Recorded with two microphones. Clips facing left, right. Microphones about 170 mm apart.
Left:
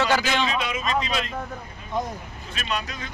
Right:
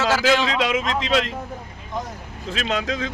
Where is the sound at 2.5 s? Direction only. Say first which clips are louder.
Right 6 dB; 90° right.